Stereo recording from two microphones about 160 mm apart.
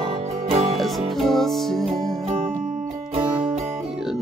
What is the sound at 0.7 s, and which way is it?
Music, centre (ahead or behind).